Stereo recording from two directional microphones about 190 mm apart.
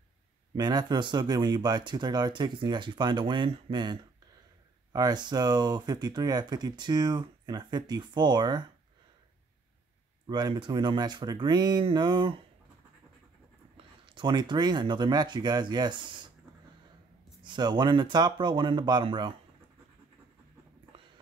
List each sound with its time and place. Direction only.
0.6 s speech: 20° right (ahead or behind)
10.2 s speech: 25° right (ahead or behind)
14.0 s speech: 25° right (ahead or behind)
17.4 s speech: 25° right (ahead or behind)